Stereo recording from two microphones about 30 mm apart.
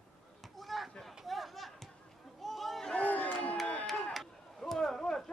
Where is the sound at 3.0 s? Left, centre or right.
Left.